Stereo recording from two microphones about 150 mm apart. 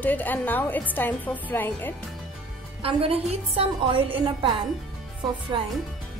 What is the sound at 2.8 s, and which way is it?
A woman's voice, 40° right (ahead or behind).